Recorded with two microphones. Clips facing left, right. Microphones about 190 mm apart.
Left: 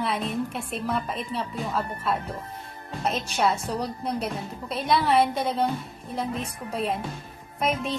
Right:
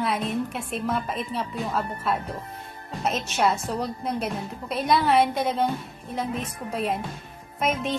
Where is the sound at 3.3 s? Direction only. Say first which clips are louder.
Right 1 dB; centre (ahead or behind).